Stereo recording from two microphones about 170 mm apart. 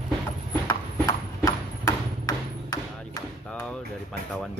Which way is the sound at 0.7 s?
20° left (ahead or behind).